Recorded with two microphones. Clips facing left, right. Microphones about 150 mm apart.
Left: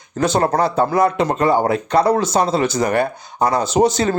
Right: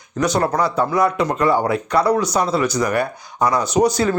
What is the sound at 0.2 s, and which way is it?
Speech, 25° left (ahead or behind).